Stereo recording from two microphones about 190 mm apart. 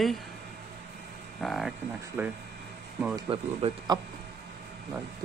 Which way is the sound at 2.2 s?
10° right (ahead or behind).